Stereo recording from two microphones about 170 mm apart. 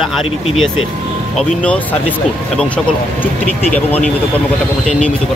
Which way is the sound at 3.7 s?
10° left (ahead or behind).